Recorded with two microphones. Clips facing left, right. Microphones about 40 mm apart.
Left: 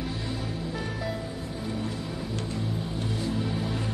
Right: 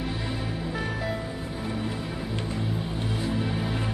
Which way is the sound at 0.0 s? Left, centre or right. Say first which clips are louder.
Right 2 dB; centre.